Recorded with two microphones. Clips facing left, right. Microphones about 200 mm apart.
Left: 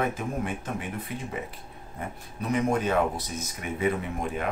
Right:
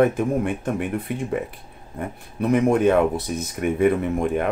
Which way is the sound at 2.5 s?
55° right (ahead or behind).